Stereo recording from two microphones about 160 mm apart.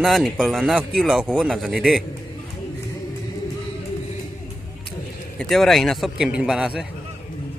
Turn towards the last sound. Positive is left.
turn(degrees=-5)  # may be behind; listen again after turning